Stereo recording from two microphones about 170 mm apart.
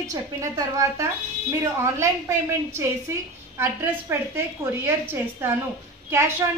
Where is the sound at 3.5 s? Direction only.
15° right (ahead or behind).